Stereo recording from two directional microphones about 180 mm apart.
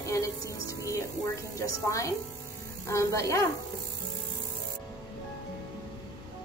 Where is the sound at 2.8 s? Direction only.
15° left (ahead or behind).